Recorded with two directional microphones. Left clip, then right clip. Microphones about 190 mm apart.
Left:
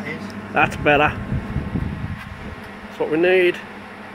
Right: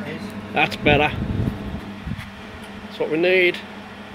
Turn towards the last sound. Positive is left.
turn(degrees=0)  # may be behind; listen again after turning